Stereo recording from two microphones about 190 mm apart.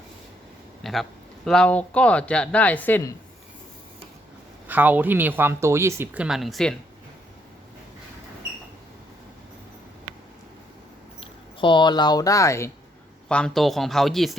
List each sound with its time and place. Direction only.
0.8 s speech: centre (ahead or behind)
4.7 s speech: 10° right (ahead or behind)
11.2 s speech: 25° left (ahead or behind)
13.2 s speech: 5° left (ahead or behind)